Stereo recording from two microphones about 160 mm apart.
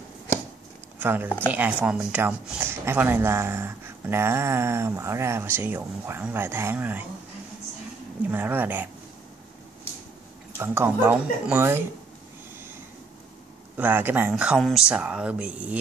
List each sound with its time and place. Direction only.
0.9 s speech: 10° right (ahead or behind)
8.3 s speech: 10° right (ahead or behind)
10.6 s speech: 15° right (ahead or behind)
13.7 s speech: 10° right (ahead or behind)